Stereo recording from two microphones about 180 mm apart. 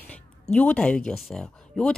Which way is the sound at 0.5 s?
5° left (ahead or behind).